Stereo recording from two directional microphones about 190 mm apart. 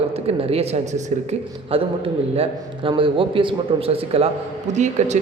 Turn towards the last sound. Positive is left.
turn(degrees=-35)  # may be behind; listen again after turning